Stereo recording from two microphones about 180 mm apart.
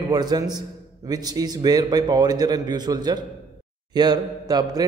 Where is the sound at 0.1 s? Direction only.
20° right (ahead or behind).